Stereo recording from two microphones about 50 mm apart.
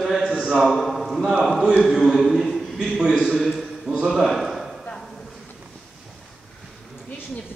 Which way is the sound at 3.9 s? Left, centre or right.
Centre.